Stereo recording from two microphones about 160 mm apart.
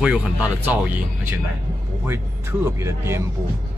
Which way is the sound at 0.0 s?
5° right (ahead or behind).